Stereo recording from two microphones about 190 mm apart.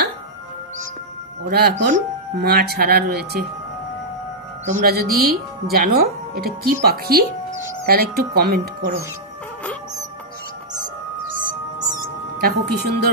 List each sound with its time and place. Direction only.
1.5 s speech: 55° right (ahead or behind)
4.6 s speech: 50° right (ahead or behind)
12.4 s speech: 55° right (ahead or behind)